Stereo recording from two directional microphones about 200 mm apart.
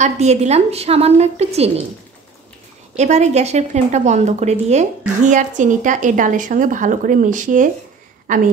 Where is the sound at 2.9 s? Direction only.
35° right (ahead or behind).